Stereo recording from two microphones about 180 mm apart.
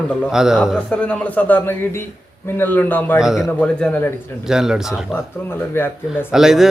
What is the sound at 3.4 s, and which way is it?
Speech, 10° left (ahead or behind).